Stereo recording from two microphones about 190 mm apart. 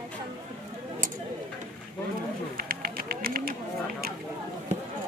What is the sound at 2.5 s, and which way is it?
Run, 50° right (ahead or behind).